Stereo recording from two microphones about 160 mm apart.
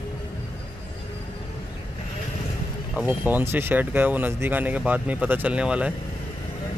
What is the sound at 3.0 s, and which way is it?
Speech, 10° right (ahead or behind).